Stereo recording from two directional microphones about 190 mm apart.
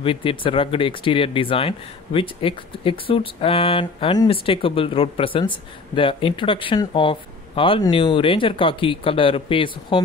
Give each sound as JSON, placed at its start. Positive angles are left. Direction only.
{"t": 0.0, "sound": "speech", "side_deg": 25}